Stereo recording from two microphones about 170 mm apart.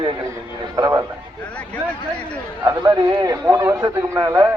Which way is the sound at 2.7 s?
20° right (ahead or behind).